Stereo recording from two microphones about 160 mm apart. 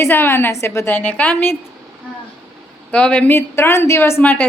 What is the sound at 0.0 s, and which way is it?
A woman's voice, 15° left (ahead or behind).